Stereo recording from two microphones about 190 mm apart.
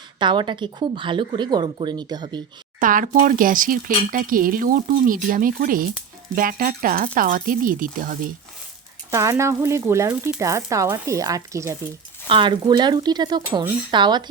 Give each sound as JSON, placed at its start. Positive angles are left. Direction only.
{"t": 0.2, "sound": "a woman's voice", "side_deg": -25}
{"t": 2.8, "sound": "speech", "side_deg": -45}
{"t": 9.0, "sound": "a woman's voice", "side_deg": -15}